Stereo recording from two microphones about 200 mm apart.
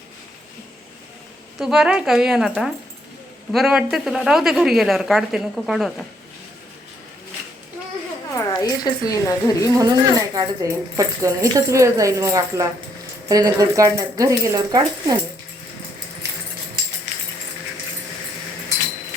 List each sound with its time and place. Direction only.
1.5 s a woman's voice: centre (ahead or behind)
8.3 s speech: 15° left (ahead or behind)
9.7 s speech: 20° right (ahead or behind)